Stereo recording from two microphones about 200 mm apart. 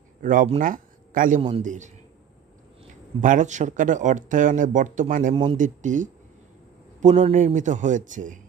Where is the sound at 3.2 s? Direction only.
40° right (ahead or behind).